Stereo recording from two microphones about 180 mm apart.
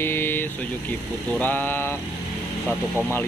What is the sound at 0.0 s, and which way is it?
Vehicle, 10° left (ahead or behind).